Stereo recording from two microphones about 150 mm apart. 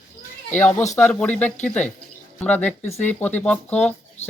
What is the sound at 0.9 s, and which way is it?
Speech, 10° left (ahead or behind).